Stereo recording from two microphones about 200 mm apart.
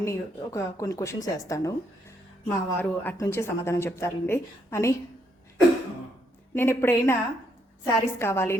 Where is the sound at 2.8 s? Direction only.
10° left (ahead or behind).